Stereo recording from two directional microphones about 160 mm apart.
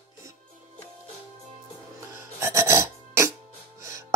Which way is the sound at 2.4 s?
15° right (ahead or behind).